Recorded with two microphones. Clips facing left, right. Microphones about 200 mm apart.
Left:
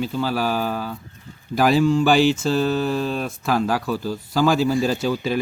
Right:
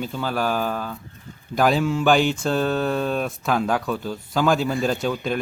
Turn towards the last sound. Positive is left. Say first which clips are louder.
# left 1 dB
turn(degrees=5)  # may be behind; listen again after turning